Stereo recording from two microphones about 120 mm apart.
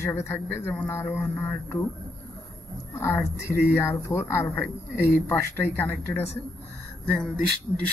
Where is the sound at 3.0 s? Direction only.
25° left (ahead or behind).